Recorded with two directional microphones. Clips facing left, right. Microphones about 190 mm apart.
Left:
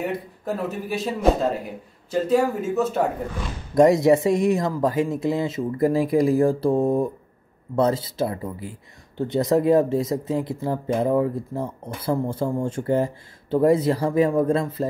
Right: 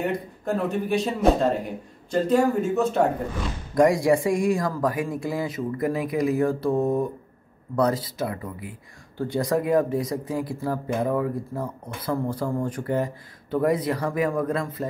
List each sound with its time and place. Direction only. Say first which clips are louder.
0.0 s speech: right 1 dB; 5° left (ahead or behind)
3.7 s speech: left 3 dB; 25° left (ahead or behind)